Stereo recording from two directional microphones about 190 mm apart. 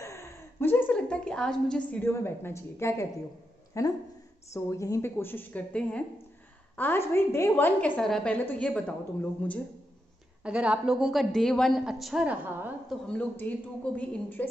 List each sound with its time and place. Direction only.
0.0 s a sound: 15° left (ahead or behind)
3.8 s a woman's voice: 15° left (ahead or behind)
10.4 s speech: 5° right (ahead or behind)
13.0 s a woman's voice: 5° left (ahead or behind)